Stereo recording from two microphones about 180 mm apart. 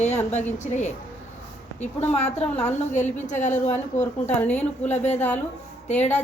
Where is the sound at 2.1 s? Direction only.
35° left (ahead or behind).